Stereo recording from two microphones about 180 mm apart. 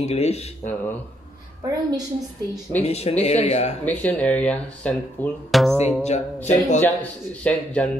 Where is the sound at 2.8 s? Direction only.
35° left (ahead or behind).